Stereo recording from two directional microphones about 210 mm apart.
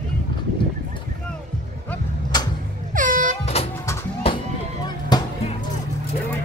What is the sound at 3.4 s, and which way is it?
Vehicle, 30° left (ahead or behind).